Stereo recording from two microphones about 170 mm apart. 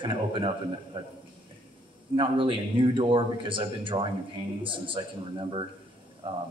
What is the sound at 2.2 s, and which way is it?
Speech, 30° right (ahead or behind).